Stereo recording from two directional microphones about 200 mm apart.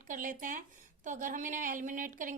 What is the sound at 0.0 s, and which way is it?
A woman's voice, 40° right (ahead or behind).